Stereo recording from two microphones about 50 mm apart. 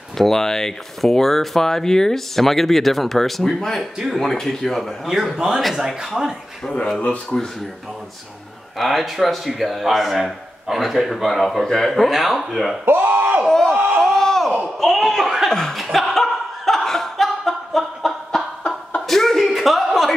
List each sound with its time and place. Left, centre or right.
0.2 s speech: centre
5.0 s a man's voice: centre
7.3 s speech: centre
8.7 s speech: centre
11.6 s speech: centre
11.9 s speech: centre
12.8 s speech: right
13.5 s crowd: centre
14.0 s a sound: centre
18.9 s slap: centre